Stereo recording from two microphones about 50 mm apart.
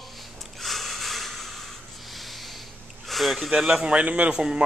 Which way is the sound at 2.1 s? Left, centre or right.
Centre.